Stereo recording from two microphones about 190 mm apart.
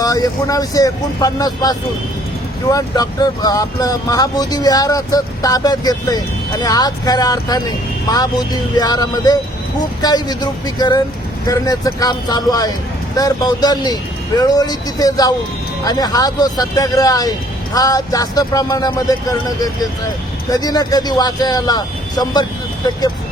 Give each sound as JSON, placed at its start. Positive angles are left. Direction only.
{"t": 0.0, "sound": "speech", "side_deg": 20}